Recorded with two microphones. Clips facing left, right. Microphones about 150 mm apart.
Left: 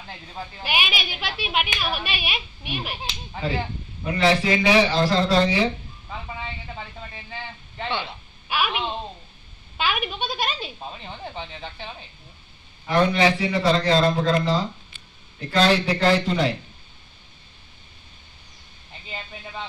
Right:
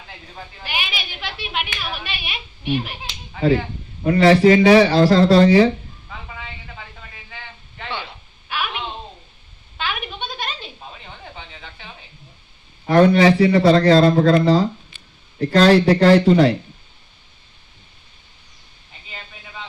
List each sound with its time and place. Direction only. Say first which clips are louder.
0.7 s a woman's voice: left 2 dB; 15° left (ahead or behind)
4.0 s a man's voice: right 7 dB; 50° right (ahead or behind)
4.4 s a man's voice: right 8 dB; 40° right (ahead or behind)
8.5 s a sound: left 2 dB; 10° left (ahead or behind)
9.8 s a sound: left 2 dB; 10° left (ahead or behind)
11.1 s a sound: left 4 dB; 30° left (ahead or behind)
12.8 s a man's voice: right 7 dB; 45° right (ahead or behind)
14.3 s speech: right 7 dB; 70° right (ahead or behind)
15.3 s a man's voice: right 7 dB; 50° right (ahead or behind)